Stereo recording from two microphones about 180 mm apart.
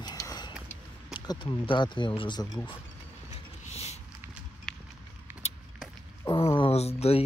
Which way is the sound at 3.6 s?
35° left (ahead or behind).